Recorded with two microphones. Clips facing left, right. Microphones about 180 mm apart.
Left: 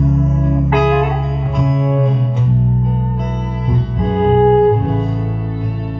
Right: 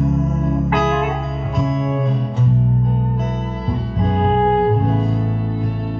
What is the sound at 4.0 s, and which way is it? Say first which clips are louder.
Music: left 6 dB; centre (ahead or behind).